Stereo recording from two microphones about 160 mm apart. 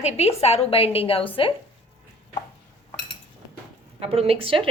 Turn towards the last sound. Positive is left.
turn(degrees=-35)  # may be behind; listen again after turning